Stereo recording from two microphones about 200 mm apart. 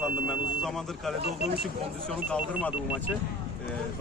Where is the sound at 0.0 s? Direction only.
Centre (ahead or behind).